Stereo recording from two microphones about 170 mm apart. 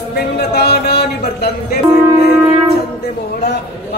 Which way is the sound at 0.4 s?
70° left (ahead or behind).